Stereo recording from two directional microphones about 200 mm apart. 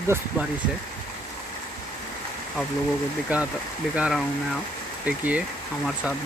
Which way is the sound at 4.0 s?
Centre (ahead or behind).